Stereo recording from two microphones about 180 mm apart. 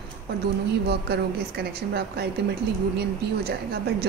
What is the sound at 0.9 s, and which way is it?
A woman's voice, 65° right (ahead or behind).